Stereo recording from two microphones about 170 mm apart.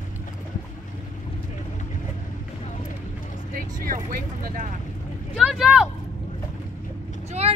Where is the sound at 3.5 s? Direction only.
50° right (ahead or behind).